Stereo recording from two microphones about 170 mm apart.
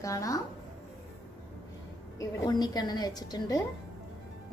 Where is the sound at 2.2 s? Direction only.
25° left (ahead or behind).